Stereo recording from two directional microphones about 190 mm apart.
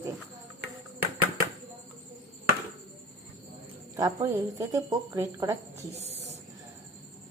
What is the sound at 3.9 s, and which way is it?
Speech, 15° right (ahead or behind).